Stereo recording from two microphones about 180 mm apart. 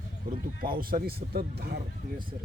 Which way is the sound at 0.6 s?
55° right (ahead or behind).